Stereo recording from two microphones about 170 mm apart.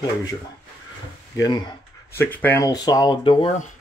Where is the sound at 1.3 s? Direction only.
20° left (ahead or behind).